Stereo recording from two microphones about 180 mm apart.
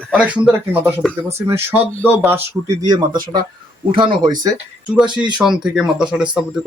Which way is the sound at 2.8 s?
25° right (ahead or behind).